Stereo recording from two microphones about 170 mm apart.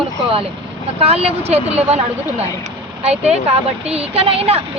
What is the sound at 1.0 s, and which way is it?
A woman's voice, 35° right (ahead or behind).